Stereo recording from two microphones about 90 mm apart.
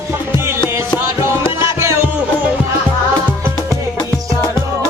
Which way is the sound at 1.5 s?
30° right (ahead or behind).